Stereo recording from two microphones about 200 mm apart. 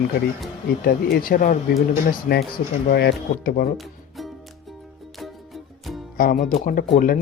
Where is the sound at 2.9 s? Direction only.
50° left (ahead or behind).